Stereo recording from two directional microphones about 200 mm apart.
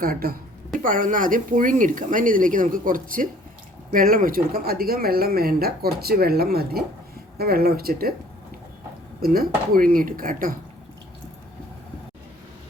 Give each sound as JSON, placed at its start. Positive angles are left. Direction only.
{"t": 0.0, "sound": "speech", "side_deg": -45}
{"t": 9.2, "sound": "speech", "side_deg": -45}